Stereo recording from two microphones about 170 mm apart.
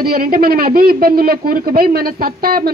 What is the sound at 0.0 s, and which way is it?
A woman's voice, 60° right (ahead or behind).